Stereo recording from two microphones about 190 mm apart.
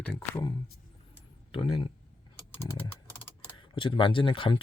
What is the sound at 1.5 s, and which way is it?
Speech, 25° left (ahead or behind).